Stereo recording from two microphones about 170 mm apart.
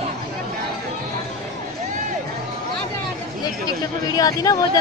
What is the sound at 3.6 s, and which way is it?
Speech, 20° left (ahead or behind).